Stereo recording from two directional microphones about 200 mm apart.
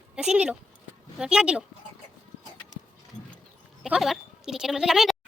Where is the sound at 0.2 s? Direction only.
5° right (ahead or behind).